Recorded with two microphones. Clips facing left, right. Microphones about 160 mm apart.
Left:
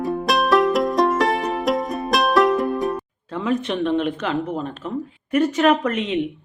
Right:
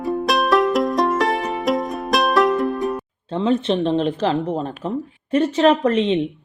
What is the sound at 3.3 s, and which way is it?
Speech, 30° right (ahead or behind).